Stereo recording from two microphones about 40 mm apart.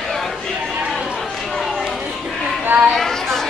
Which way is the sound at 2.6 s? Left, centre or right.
Right.